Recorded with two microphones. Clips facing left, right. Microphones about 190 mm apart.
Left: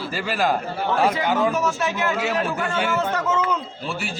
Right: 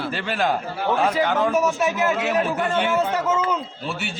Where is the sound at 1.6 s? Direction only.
20° right (ahead or behind).